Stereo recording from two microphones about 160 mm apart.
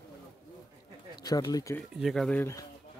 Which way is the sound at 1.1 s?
25° left (ahead or behind).